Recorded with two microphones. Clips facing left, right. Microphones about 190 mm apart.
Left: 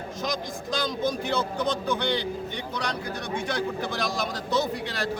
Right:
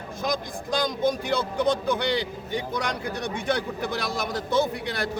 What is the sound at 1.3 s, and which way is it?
Speech, 10° right (ahead or behind).